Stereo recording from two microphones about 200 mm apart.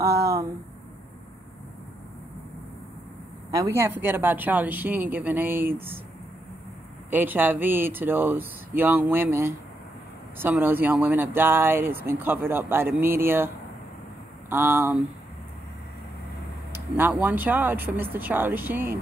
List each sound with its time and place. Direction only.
0.0 s a sound: 50° right (ahead or behind)
3.5 s speech: 15° right (ahead or behind)
7.1 s speech: 10° right (ahead or behind)
14.5 s speech: 15° right (ahead or behind)
16.7 s a sound: 10° right (ahead or behind)
17.1 s speech: 5° right (ahead or behind)